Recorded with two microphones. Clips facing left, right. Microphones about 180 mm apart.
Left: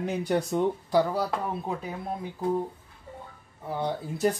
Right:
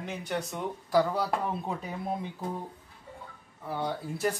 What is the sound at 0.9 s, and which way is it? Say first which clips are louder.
Speech: right 3 dB; 15° left (ahead or behind).